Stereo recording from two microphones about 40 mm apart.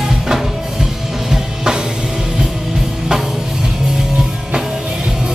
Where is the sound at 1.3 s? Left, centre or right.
Centre.